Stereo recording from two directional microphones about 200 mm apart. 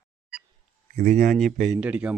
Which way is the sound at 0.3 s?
Centre (ahead or behind).